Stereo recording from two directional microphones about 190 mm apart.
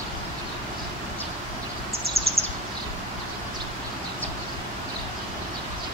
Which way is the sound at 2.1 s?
30° right (ahead or behind).